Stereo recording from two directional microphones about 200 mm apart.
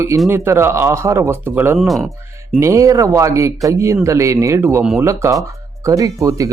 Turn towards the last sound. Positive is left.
turn(degrees=-15)  # may be behind; listen again after turning